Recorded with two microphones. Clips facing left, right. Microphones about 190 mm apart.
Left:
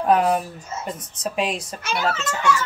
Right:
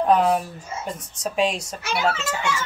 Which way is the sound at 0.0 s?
5° left (ahead or behind).